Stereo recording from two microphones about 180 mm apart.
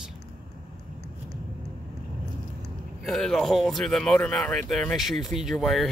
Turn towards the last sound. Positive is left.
turn(degrees=0)  # may be behind; listen again after turning